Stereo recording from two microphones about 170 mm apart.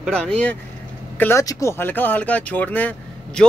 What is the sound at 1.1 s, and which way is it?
Speech, 15° left (ahead or behind).